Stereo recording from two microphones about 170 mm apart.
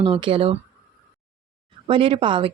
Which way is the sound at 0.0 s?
30° right (ahead or behind).